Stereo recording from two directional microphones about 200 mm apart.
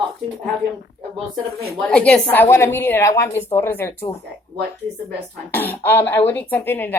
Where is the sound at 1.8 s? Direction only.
5° left (ahead or behind).